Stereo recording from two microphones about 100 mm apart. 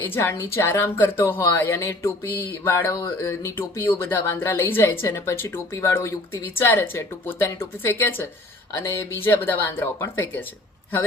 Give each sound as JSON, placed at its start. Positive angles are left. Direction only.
{"t": 0.0, "sound": "speech", "side_deg": 20}
{"t": 2.9, "sound": "speech", "side_deg": 40}